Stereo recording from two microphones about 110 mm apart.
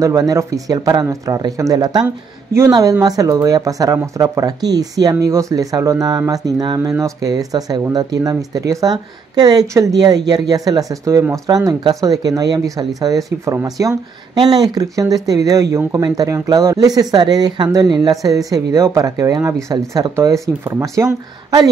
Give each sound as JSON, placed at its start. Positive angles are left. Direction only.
{"t": 0.0, "sound": "speech", "side_deg": -30}
{"t": 2.0, "sound": "speech", "side_deg": -25}